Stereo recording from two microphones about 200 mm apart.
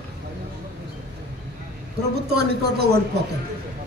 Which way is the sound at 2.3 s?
55° right (ahead or behind).